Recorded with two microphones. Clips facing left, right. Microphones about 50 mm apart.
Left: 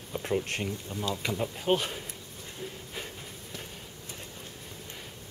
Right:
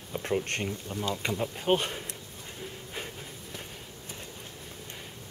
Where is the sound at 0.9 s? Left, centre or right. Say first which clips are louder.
Right 1 dB; centre.